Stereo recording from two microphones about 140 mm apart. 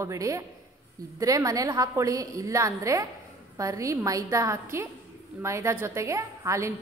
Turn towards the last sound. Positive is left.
turn(degrees=-20)  # may be behind; listen again after turning